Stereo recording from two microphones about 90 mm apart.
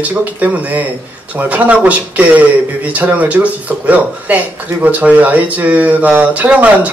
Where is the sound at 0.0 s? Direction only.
15° right (ahead or behind).